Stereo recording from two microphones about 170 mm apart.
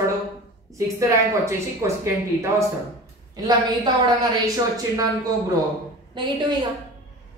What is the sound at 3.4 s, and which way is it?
Speech, 20° right (ahead or behind).